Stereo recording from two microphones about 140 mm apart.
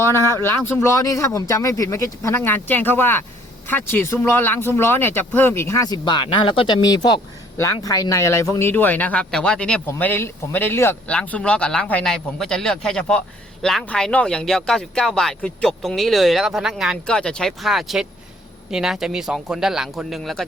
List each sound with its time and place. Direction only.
0.1 s speech: 25° right (ahead or behind)
0.3 s speech: 15° left (ahead or behind)
7.5 s a man's voice: 20° left (ahead or behind); by 20.4 s centre (ahead or behind)